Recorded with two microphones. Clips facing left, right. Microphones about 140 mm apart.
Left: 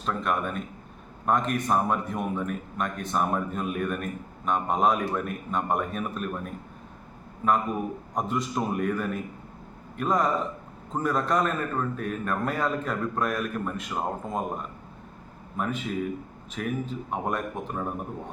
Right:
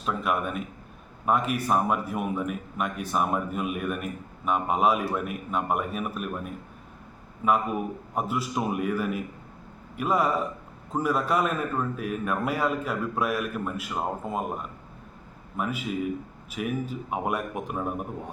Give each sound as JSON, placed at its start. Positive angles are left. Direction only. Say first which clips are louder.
{"t": 0.0, "sound": "a man's voice", "louder": "even", "side_deg": -5}